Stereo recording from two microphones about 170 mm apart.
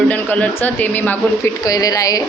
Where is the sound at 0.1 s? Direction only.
10° left (ahead or behind).